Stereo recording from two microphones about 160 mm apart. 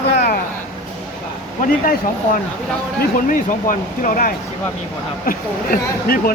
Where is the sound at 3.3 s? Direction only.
60° left (ahead or behind).